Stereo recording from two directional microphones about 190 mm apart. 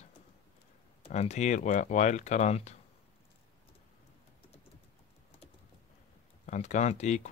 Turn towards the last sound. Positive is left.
turn(degrees=35)  # may be behind; listen again after turning